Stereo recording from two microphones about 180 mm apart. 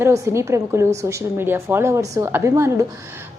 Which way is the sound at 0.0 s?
15° right (ahead or behind).